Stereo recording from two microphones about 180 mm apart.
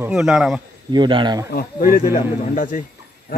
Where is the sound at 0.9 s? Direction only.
25° right (ahead or behind).